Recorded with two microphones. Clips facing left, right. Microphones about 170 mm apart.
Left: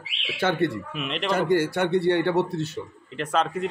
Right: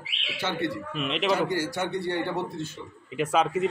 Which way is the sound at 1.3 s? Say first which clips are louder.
Left 5 dB; 55° left (ahead or behind).